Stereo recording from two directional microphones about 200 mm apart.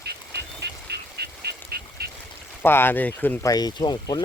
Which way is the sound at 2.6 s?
10° left (ahead or behind).